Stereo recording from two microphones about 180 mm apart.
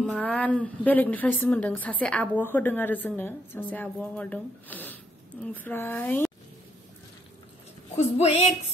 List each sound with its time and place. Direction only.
0.0 s a woman's voice: 5° left (ahead or behind)
8.0 s speech: 35° left (ahead or behind)